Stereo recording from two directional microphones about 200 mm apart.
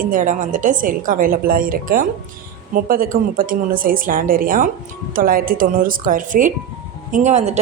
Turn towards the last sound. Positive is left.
turn(degrees=-35)  # may be behind; listen again after turning